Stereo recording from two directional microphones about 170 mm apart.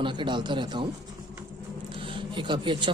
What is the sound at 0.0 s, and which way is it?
Speech, 30° right (ahead or behind).